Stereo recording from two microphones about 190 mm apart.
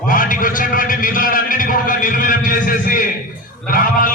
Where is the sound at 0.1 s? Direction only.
45° left (ahead or behind).